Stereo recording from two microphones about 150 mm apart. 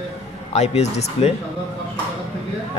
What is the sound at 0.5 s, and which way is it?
Speech, 45° left (ahead or behind).